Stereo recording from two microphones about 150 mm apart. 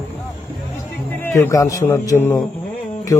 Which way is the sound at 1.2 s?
15° left (ahead or behind).